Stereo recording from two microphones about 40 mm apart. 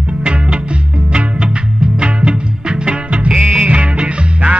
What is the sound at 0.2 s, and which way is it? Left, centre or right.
Music, right.